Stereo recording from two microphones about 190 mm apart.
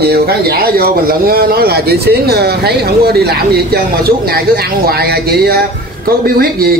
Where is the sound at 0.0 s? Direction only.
55° right (ahead or behind).